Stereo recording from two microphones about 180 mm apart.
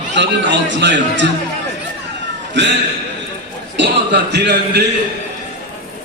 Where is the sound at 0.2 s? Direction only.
80° right.